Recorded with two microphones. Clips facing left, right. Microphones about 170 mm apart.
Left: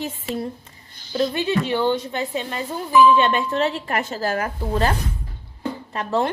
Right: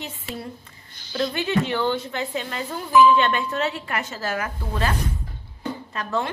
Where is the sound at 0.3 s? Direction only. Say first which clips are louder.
Left 6 dB; centre (ahead or behind).